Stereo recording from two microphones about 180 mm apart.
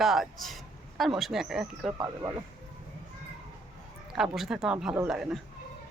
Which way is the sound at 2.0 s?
15° right (ahead or behind).